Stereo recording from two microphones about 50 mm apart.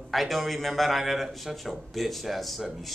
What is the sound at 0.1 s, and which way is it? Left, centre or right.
A man's voice, centre.